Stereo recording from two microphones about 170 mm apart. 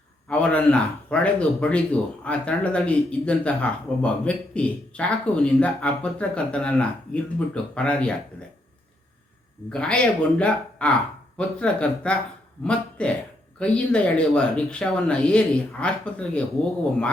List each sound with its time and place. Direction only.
0.3 s speech: 5° left (ahead or behind)
9.6 s speech: 5° left (ahead or behind)